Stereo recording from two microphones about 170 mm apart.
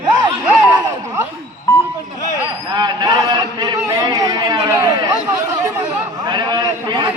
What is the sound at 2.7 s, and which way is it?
A man's voice, 25° right (ahead or behind).